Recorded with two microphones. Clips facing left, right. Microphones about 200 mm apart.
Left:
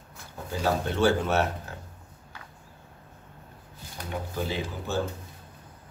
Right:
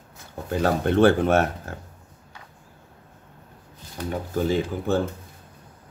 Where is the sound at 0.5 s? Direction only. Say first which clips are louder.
Right 5 dB; 60° right (ahead or behind).